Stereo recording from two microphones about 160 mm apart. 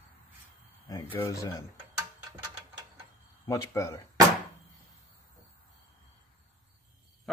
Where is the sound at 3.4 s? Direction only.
20° left (ahead or behind).